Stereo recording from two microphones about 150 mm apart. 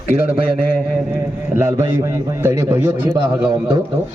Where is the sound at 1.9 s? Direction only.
15° right (ahead or behind).